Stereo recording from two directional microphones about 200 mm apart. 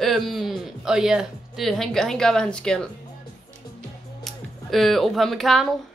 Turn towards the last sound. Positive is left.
turn(degrees=0)  # may be behind; listen again after turning